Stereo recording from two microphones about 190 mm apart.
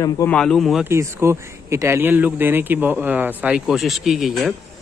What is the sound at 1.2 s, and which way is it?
A man's voice, 15° right (ahead or behind).